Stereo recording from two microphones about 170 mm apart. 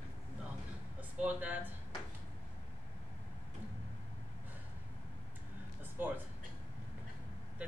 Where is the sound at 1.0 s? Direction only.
10° right (ahead or behind).